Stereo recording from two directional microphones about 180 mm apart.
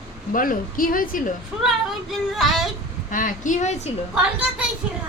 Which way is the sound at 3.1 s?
45° left (ahead or behind).